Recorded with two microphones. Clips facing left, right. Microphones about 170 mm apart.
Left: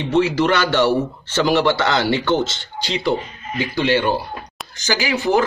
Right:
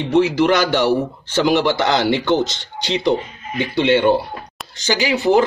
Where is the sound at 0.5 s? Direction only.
15° right (ahead or behind).